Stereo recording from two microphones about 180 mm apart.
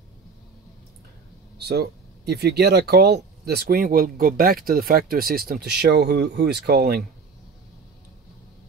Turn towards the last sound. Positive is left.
turn(degrees=-60)  # may be behind; listen again after turning